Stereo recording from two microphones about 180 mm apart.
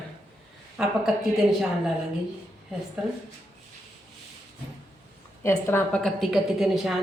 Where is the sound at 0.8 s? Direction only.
Centre (ahead or behind).